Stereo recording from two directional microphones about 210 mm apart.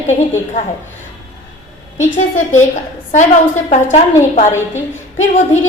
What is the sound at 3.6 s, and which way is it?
Speech, 35° left (ahead or behind).